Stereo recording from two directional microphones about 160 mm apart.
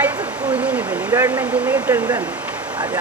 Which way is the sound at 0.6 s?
10° right (ahead or behind).